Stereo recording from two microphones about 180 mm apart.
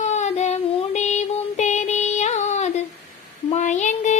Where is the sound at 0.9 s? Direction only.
40° left (ahead or behind).